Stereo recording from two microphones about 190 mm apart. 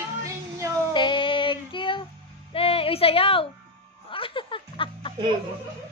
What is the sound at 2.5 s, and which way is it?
Speech, 30° left (ahead or behind).